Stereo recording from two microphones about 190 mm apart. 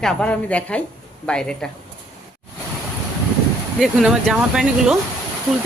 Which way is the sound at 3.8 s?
Centre (ahead or behind).